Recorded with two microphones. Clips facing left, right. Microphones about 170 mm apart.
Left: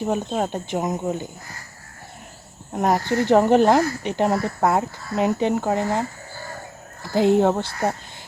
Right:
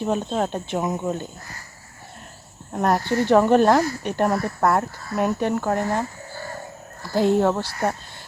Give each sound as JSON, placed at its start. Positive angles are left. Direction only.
{"t": 0.0, "sound": "speech", "side_deg": 10}
{"t": 2.7, "sound": "speech", "side_deg": 15}